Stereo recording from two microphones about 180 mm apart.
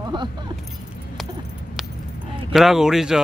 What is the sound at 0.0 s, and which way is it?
Keys jangling, 25° right (ahead or behind).